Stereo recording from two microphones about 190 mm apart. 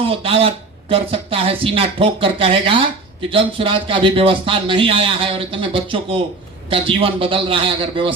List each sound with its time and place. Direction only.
0.0 s speech: 30° right (ahead or behind)